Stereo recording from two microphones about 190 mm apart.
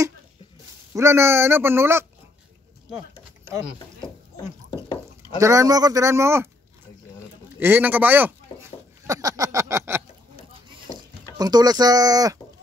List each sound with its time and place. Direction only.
0.9 s speech: 15° right (ahead or behind)
5.4 s speech: 15° right (ahead or behind)
7.5 s speech: 10° right (ahead or behind)
9.0 s a sound: 20° right (ahead or behind)
11.3 s speech: 20° right (ahead or behind)